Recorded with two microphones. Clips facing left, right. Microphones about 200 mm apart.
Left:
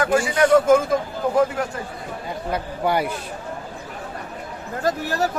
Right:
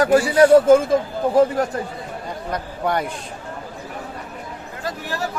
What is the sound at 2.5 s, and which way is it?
Speech, 5° left (ahead or behind).